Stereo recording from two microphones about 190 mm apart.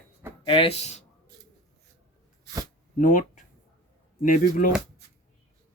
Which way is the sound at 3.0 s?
45° left (ahead or behind).